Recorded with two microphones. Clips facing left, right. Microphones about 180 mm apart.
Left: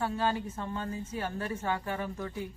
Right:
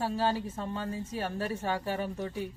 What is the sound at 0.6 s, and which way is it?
Speech, 30° right (ahead or behind).